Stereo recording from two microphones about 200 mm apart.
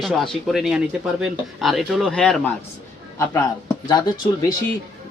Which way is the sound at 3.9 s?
20° left (ahead or behind).